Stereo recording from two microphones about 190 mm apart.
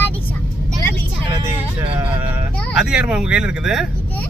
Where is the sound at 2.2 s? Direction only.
10° right (ahead or behind).